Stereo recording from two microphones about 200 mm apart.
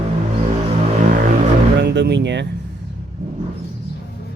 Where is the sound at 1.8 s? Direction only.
60° right (ahead or behind).